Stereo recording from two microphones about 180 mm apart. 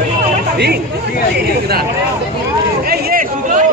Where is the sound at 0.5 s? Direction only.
65° right (ahead or behind).